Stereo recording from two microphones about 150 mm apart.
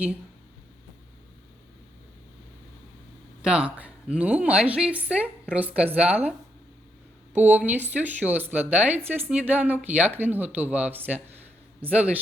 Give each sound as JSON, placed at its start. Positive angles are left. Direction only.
{"t": 3.4, "sound": "a woman's voice", "side_deg": -5}
{"t": 7.3, "sound": "a woman's voice", "side_deg": -10}